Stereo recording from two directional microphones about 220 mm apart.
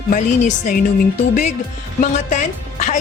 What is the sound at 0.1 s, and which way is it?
Speech, 40° left (ahead or behind).